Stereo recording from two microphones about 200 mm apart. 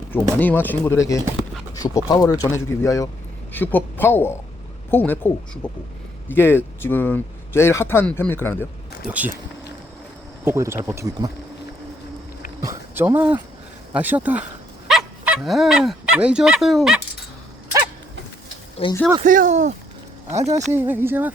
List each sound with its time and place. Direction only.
0.1 s a man's voice: 10° left (ahead or behind)
9.0 s speech: 5° right (ahead or behind)
10.4 s speech: 10° right (ahead or behind)
12.6 s speech: 10° right (ahead or behind)
19.2 s speech: 40° right (ahead or behind)
20.7 s speech: 10° right (ahead or behind)